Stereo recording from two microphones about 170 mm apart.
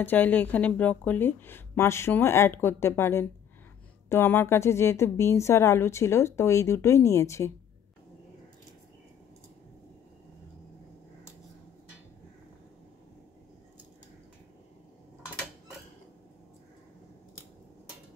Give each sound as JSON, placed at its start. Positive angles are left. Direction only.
{"t": 0.0, "sound": "a woman's voice", "side_deg": 10}